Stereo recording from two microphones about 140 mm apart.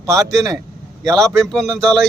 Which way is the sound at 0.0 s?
20° right (ahead or behind).